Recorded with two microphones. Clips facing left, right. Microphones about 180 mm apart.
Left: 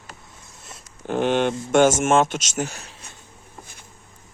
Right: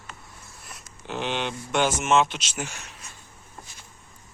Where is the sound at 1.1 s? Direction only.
50° left (ahead or behind).